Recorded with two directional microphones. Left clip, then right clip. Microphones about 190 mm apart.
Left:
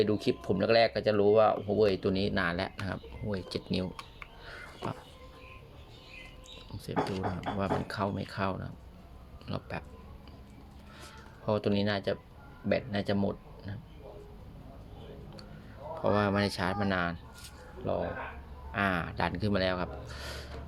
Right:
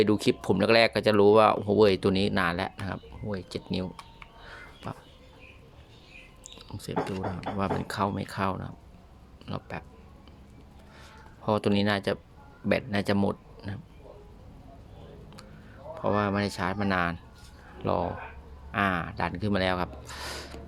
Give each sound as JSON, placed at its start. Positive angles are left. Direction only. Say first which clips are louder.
{"t": 0.0, "sound": "speech", "louder": "right 4 dB", "side_deg": -30}
{"t": 4.4, "sound": "a sound", "louder": "left 2 dB", "side_deg": -10}
{"t": 6.6, "sound": "speech", "louder": "right 1 dB", "side_deg": -20}
{"t": 11.4, "sound": "speech", "louder": "right 4 dB", "side_deg": -25}
{"t": 16.0, "sound": "speech", "louder": "right 1 dB", "side_deg": -15}
{"t": 18.7, "sound": "speech", "louder": "right 3 dB", "side_deg": -20}